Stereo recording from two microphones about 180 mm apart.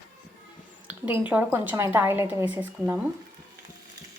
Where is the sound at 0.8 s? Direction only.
10° right (ahead or behind).